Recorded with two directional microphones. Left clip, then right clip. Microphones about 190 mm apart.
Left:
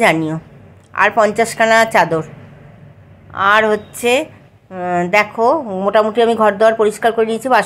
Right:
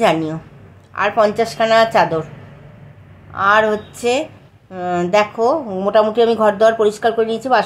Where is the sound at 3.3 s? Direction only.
20° left (ahead or behind).